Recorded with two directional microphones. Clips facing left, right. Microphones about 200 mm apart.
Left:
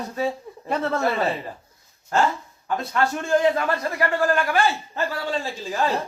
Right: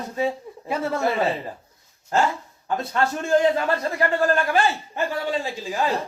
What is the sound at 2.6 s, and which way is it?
A woman's voice, 25° right (ahead or behind).